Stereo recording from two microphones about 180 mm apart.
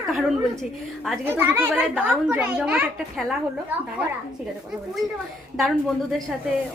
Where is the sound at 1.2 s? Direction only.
15° right (ahead or behind).